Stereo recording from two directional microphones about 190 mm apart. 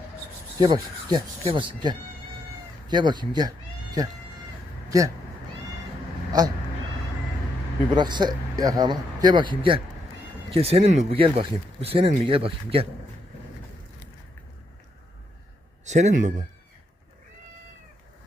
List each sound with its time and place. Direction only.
0.6 s speech: 25° right (ahead or behind)
6.3 s speech: 20° right (ahead or behind)
7.9 s speech: 20° right (ahead or behind)
15.8 s speech: 40° right (ahead or behind)